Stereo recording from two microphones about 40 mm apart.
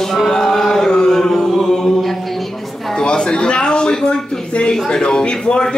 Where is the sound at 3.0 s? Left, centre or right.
Left.